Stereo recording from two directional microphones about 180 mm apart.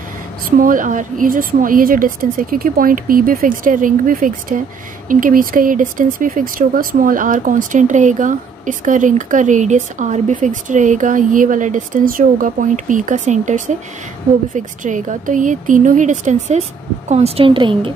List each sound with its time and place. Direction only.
0.5 s a woman's voice: 45° right (ahead or behind); by 17.9 s 30° right (ahead or behind)